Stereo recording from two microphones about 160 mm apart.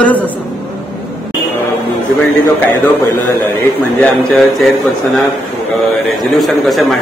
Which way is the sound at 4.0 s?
5° left (ahead or behind).